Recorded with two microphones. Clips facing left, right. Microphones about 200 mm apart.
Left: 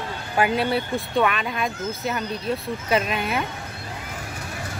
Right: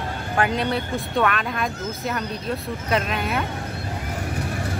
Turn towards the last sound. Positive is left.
turn(degrees=5)  # may be behind; listen again after turning